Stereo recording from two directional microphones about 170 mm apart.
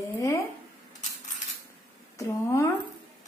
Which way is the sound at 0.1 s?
20° left (ahead or behind).